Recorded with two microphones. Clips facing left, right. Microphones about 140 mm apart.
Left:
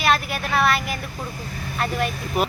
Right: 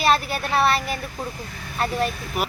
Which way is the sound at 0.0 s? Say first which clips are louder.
Right 1 dB; 30° right (ahead or behind).